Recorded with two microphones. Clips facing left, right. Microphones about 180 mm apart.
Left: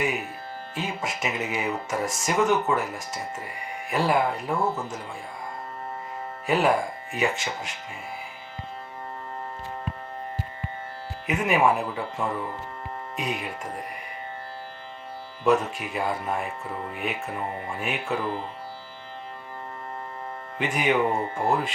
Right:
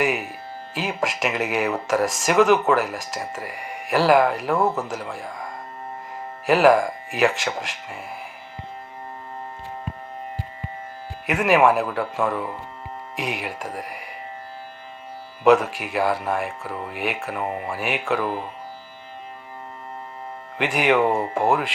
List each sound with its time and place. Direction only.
0.7 s speech: 85° right
6.4 s speech: 80° right
11.3 s speech: 80° right
15.4 s speech: 85° right
20.6 s speech: 80° right